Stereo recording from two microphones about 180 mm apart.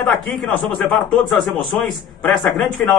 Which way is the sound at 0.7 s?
5° left (ahead or behind).